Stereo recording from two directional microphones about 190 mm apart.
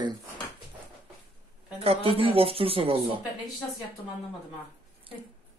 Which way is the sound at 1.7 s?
30° right (ahead or behind).